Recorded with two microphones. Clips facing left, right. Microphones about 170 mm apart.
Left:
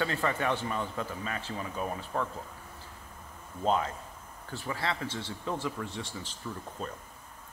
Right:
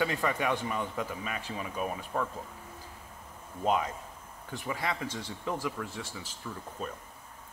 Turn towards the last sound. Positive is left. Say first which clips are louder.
# even
turn(degrees=-5)  # may be behind; listen again after turning